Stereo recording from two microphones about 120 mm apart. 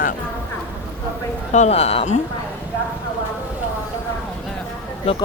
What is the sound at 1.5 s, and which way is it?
Speech, 65° left (ahead or behind).